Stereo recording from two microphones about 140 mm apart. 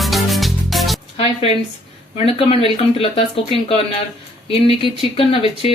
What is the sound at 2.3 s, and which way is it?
Speech, 45° left (ahead or behind).